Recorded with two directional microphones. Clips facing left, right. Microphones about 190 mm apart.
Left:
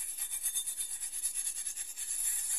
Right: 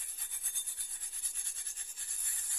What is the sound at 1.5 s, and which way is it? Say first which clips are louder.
Toothbrush: left 1 dB; 15° left (ahead or behind).